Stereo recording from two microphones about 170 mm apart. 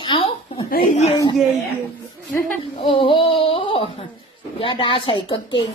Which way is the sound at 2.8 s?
30° left (ahead or behind).